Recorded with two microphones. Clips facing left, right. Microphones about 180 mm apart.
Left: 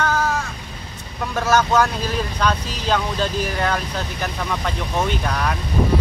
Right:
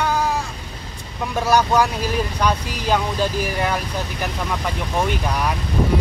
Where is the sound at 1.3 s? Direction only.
15° right (ahead or behind).